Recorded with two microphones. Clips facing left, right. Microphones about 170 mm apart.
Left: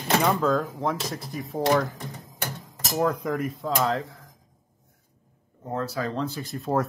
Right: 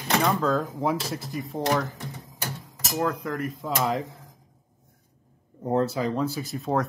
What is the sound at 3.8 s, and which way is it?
Speech, 15° right (ahead or behind).